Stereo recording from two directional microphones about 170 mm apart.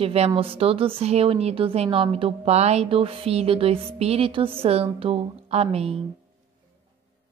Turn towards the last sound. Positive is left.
turn(degrees=-35)  # may be behind; listen again after turning